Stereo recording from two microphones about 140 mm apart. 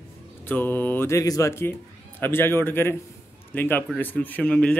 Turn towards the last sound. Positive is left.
turn(degrees=10)  # may be behind; listen again after turning